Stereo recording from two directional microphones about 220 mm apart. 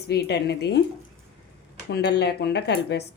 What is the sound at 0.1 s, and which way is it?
Speech, 50° left (ahead or behind).